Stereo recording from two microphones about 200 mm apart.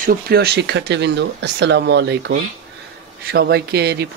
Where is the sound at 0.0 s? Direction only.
50° right (ahead or behind).